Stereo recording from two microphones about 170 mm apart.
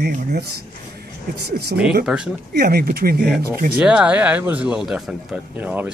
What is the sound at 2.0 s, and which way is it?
Speech, 5° right (ahead or behind).